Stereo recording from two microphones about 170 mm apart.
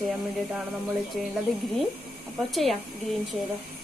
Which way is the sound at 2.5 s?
Centre (ahead or behind).